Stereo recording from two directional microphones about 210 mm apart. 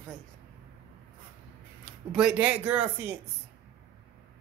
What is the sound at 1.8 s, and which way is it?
Speech, 5° right (ahead or behind).